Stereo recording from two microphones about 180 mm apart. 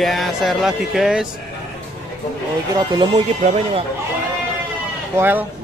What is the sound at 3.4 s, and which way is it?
Speech, 40° right (ahead or behind).